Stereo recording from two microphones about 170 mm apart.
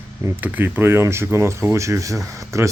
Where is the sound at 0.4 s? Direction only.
10° right (ahead or behind).